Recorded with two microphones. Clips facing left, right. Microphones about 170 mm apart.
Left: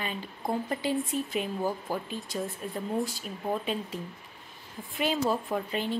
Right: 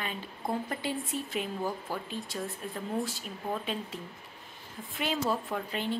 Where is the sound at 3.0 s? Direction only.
15° left (ahead or behind).